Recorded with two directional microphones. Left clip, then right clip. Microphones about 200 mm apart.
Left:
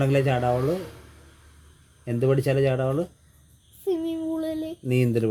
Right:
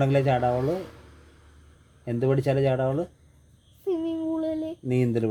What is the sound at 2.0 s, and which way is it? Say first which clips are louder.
Speech: left 1 dB; 15° left (ahead or behind).